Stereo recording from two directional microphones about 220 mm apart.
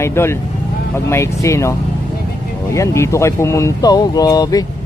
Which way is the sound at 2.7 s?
15° left (ahead or behind).